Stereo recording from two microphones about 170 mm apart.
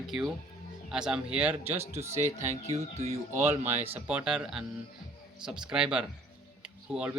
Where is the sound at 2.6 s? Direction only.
40° right (ahead or behind).